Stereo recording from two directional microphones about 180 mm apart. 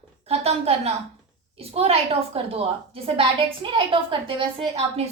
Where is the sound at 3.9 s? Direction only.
30° right (ahead or behind).